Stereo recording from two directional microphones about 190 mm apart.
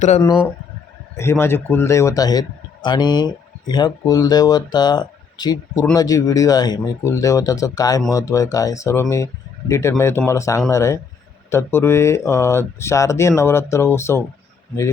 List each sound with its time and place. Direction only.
0.2 s a man's voice: 20° left (ahead or behind)